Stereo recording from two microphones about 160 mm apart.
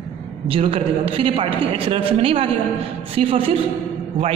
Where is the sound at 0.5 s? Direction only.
35° right (ahead or behind).